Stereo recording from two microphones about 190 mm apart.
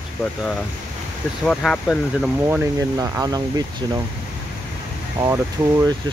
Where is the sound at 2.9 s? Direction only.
20° right (ahead or behind).